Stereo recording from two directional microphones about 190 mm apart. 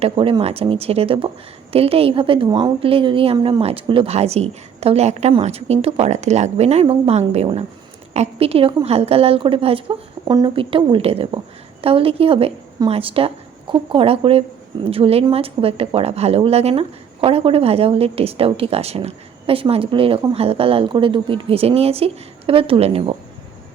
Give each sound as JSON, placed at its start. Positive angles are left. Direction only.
{"t": 0.0, "sound": "a woman's voice", "side_deg": -30}